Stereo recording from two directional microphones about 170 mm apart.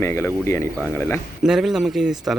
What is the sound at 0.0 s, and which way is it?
Speech, 15° left (ahead or behind).